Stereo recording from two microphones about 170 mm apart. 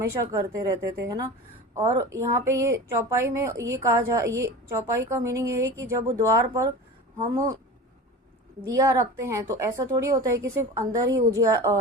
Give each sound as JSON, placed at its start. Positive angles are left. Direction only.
{"t": 0.0, "sound": "a woman's voice", "side_deg": -20}
{"t": 8.6, "sound": "a woman's voice", "side_deg": -20}